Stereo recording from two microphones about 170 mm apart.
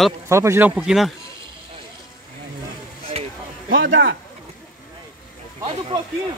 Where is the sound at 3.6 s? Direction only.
90° right.